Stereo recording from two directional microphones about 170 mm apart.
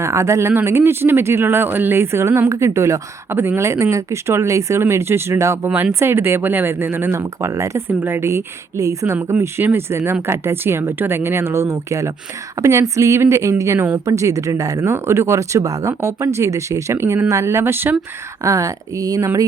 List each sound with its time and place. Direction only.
0.0 s speech: 15° right (ahead or behind)